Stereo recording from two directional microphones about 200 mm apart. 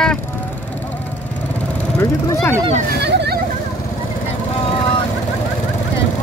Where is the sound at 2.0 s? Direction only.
15° left (ahead or behind).